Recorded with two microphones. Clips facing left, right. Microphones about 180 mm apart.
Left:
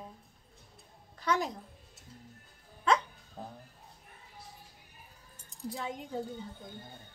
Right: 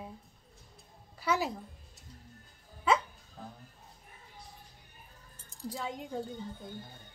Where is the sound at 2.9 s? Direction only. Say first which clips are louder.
Even; 5° right (ahead or behind).